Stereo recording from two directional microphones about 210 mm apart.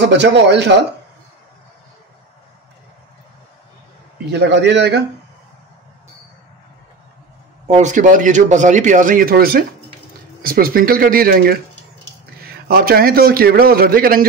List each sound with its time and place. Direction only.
0.1 s a man's voice: 55° right (ahead or behind)
4.3 s a man's voice: 55° right (ahead or behind)
7.6 s a man's voice: 35° right (ahead or behind)